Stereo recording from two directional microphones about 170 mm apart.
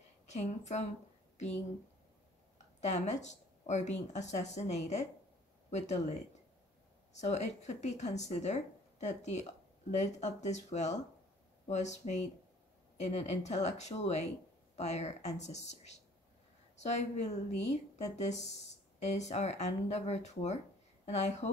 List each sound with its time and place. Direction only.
0.3 s a woman's voice: 40° left (ahead or behind)
2.8 s a woman's voice: 45° left (ahead or behind)
7.2 s a woman's voice: 40° left (ahead or behind)